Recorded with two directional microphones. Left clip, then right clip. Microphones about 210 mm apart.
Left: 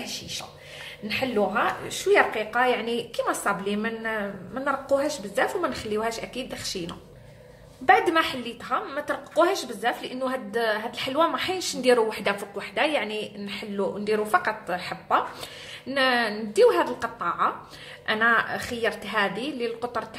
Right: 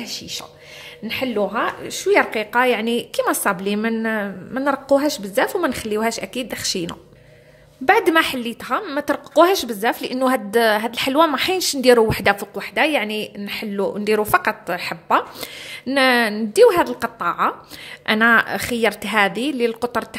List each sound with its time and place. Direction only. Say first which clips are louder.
0.0 s a woman's voice: right 4 dB; 40° right (ahead or behind)